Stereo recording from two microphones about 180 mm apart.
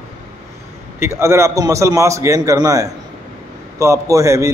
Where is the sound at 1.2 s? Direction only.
15° right (ahead or behind).